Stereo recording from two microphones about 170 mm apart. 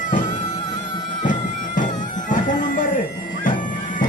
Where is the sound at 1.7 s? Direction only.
50° left (ahead or behind).